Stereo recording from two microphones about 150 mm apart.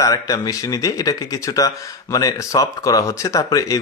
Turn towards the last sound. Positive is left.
turn(degrees=20)  # may be behind; listen again after turning